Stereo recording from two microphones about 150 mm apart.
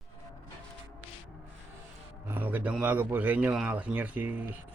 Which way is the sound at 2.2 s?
15° right (ahead or behind).